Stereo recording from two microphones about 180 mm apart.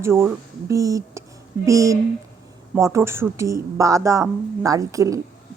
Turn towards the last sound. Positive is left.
turn(degrees=-20)  # may be behind; listen again after turning